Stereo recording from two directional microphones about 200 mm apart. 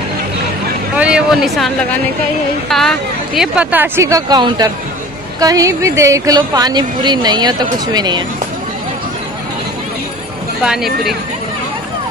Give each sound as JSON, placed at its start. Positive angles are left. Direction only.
{"t": 0.9, "sound": "speech", "side_deg": -5}
{"t": 2.7, "sound": "speech", "side_deg": 0}
{"t": 10.6, "sound": "speech", "side_deg": 0}